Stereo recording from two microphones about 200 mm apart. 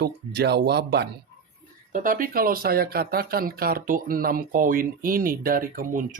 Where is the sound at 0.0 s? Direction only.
55° right (ahead or behind).